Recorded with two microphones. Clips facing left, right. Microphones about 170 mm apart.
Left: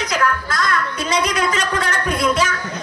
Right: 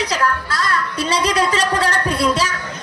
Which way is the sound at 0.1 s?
35° right (ahead or behind).